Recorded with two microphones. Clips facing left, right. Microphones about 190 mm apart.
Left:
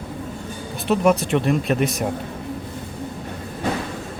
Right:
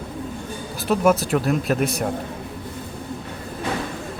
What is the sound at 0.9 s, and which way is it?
Speech, centre (ahead or behind).